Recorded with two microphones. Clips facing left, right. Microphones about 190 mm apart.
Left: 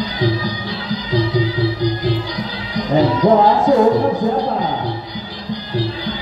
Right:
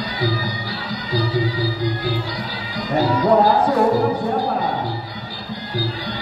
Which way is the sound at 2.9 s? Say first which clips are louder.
Left 3 dB; 25° left (ahead or behind).